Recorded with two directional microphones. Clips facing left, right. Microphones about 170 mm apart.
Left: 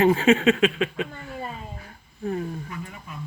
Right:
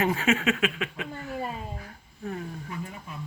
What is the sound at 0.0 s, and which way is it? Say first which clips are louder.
Speech: left 7 dB; 30° left (ahead or behind).